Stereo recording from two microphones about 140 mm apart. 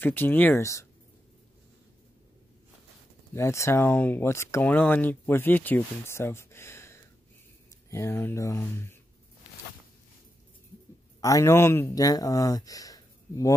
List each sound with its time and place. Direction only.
0.0 s speech: 15° left (ahead or behind)
3.3 s speech: 20° left (ahead or behind)
11.1 s speech: 25° left (ahead or behind)